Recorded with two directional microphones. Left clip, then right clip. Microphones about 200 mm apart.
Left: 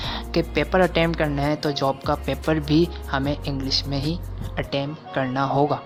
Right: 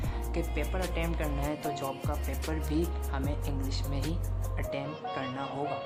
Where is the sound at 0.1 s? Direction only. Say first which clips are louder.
Left 13 dB; 35° left (ahead or behind).